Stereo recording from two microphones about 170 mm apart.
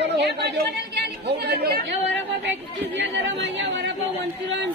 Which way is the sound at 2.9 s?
90° right.